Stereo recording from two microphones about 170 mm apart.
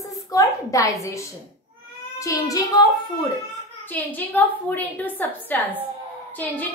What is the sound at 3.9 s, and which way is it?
A woman's voice, 10° left (ahead or behind).